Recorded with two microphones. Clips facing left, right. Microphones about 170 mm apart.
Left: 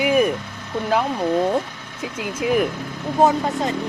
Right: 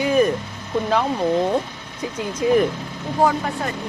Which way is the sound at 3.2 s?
20° left (ahead or behind).